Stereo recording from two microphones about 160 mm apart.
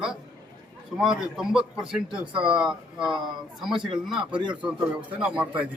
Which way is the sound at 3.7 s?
30° right (ahead or behind).